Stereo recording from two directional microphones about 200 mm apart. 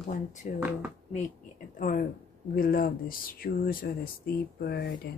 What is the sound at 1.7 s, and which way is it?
Speech, 40° left (ahead or behind).